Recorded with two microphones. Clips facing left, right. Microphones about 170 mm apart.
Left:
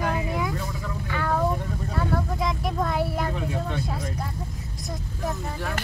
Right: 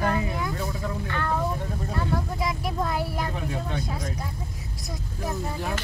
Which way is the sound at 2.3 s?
5° right (ahead or behind).